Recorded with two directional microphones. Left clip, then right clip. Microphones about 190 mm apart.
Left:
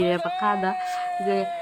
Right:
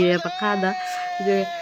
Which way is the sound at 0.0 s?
20° right (ahead or behind).